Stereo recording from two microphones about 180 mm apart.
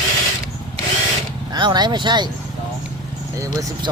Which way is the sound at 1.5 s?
25° right (ahead or behind).